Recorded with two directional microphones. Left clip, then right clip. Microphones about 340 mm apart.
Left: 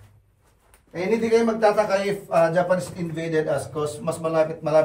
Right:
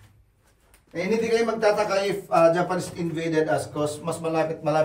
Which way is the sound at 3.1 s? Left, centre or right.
Centre.